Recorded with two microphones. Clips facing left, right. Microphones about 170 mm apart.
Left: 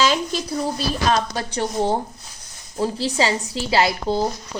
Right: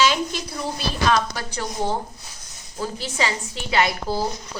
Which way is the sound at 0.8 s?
35° left (ahead or behind).